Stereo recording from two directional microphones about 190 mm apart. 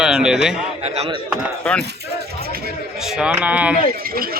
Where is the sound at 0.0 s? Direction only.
5° right (ahead or behind).